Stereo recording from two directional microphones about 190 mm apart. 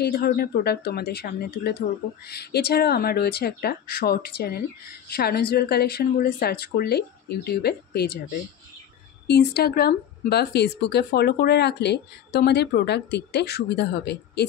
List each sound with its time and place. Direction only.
0.0 s speech: 55° left (ahead or behind)
9.3 s speech: 60° left (ahead or behind)